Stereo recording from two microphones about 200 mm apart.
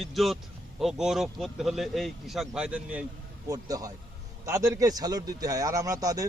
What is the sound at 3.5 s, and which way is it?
A man's voice, 20° right (ahead or behind).